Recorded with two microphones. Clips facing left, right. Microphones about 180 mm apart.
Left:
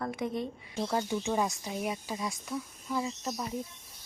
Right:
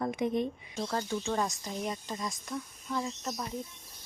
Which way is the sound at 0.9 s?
15° left (ahead or behind).